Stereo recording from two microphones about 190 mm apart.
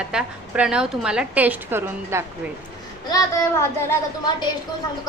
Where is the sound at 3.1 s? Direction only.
20° left (ahead or behind).